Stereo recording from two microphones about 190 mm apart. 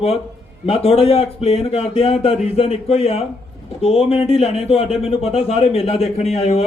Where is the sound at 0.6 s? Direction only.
30° left (ahead or behind).